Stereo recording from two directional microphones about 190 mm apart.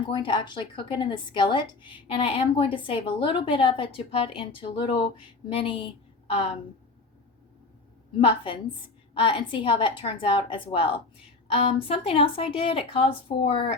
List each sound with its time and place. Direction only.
0.1 s a woman's voice: 25° left (ahead or behind)
9.1 s a woman's voice: 25° left (ahead or behind)